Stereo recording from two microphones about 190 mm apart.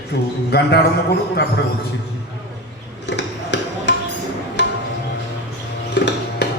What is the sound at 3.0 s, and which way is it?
Tick-tock, 65° left (ahead or behind).